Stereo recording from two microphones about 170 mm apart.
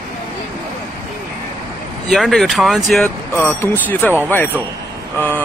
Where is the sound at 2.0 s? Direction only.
Centre (ahead or behind).